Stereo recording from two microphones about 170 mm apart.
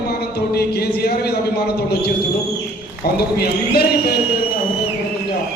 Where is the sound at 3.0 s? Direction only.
65° left (ahead or behind).